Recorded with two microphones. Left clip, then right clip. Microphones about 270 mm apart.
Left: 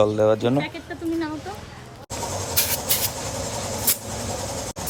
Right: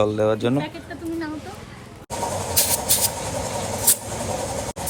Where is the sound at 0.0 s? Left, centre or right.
Centre.